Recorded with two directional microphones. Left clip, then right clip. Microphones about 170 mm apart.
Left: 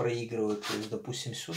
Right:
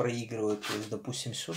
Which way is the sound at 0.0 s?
40° right (ahead or behind).